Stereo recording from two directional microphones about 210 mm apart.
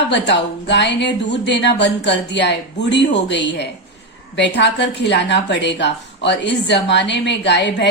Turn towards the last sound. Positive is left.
turn(degrees=55)  # may be behind; listen again after turning